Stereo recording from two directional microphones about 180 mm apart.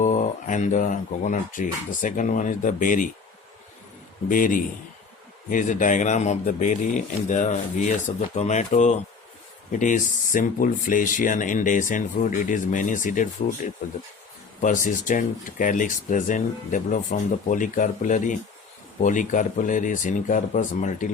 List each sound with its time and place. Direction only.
0.0 s speech: 45° left (ahead or behind)
4.3 s speech: 50° left (ahead or behind)